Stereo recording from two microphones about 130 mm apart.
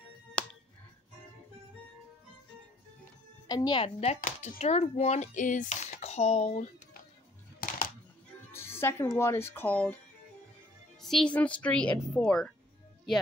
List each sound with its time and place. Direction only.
0.4 s finger snapping: 10° left (ahead or behind)
3.4 s speech: 30° left (ahead or behind)
3.8 s speech: 55° left (ahead or behind)
4.2 s speech: 90° left
4.6 s speech: 55° left (ahead or behind)
7.6 s music: 90° left
8.5 s speech: 20° left (ahead or behind)
11.0 s speech: 5° left (ahead or behind)